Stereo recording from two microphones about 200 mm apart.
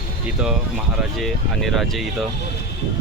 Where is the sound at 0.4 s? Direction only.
5° right (ahead or behind).